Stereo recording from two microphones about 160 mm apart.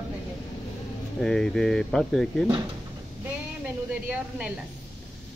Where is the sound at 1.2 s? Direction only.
5° left (ahead or behind).